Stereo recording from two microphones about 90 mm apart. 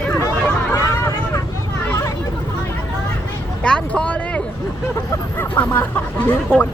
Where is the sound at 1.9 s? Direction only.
35° left (ahead or behind).